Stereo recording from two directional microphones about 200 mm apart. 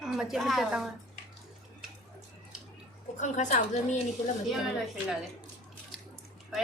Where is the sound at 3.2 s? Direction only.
35° left (ahead or behind).